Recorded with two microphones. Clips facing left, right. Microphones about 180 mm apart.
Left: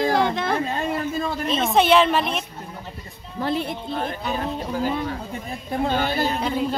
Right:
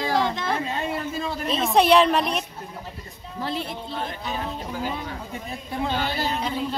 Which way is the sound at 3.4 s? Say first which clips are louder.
Left 5 dB; 55° left (ahead or behind).